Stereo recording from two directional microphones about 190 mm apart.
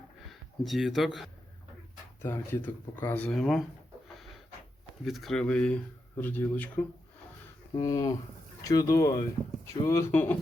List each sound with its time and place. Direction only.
0.3 s speech: centre (ahead or behind)
2.2 s speech: 10° left (ahead or behind)
5.0 s speech: centre (ahead or behind)